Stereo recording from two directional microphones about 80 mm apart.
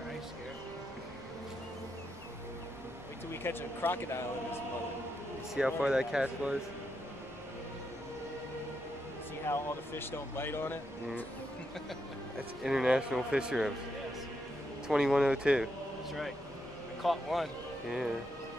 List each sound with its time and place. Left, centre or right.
3.4 s speech: left
5.5 s speech: centre
9.5 s speech: left
12.6 s speech: centre
14.9 s speech: centre
16.1 s a man's voice: centre